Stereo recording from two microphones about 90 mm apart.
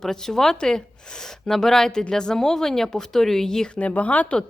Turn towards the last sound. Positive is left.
turn(degrees=15)  # may be behind; listen again after turning